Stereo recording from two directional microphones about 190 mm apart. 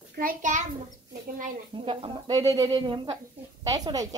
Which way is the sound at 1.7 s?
30° right (ahead or behind).